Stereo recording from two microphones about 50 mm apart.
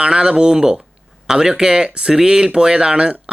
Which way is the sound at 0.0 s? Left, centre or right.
Centre.